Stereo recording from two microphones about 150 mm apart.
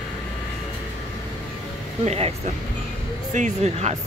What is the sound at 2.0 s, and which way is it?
Speech, 45° right (ahead or behind).